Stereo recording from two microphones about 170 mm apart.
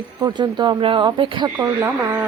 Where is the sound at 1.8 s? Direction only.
10° right (ahead or behind).